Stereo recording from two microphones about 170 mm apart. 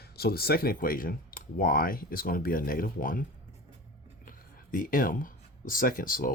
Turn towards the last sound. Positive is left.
turn(degrees=55)  # may be behind; listen again after turning